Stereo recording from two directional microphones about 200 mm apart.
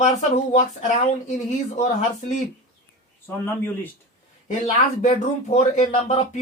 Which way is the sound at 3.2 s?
10° left (ahead or behind).